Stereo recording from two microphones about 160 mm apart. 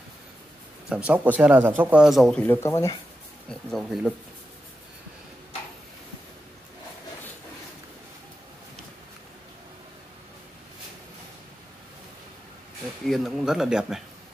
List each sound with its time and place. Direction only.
0.8 s speech: 10° right (ahead or behind); by 3.0 s 20° left (ahead or behind)
3.4 s speech: centre (ahead or behind)
13.0 s speech: centre (ahead or behind)